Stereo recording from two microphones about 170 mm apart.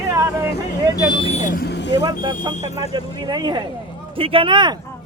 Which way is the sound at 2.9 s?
25° right (ahead or behind).